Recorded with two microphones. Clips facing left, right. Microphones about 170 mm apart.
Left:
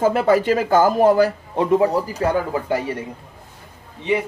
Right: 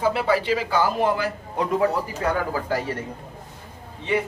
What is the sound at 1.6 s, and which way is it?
Speech, 30° left (ahead or behind).